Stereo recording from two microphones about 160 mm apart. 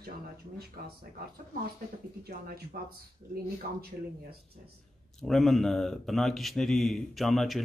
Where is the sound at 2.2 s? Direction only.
70° right (ahead or behind).